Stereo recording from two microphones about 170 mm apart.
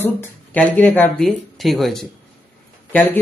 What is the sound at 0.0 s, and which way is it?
Speech, 10° left (ahead or behind).